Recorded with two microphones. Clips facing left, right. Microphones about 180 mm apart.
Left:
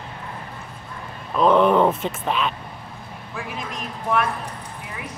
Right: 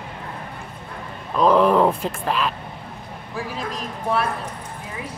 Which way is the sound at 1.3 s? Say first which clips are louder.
Even; centre (ahead or behind).